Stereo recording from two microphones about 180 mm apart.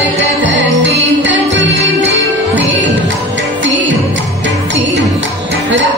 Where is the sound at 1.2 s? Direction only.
90° right.